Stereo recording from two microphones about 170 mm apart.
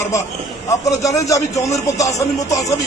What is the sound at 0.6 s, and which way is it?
A man's voice, 20° left (ahead or behind).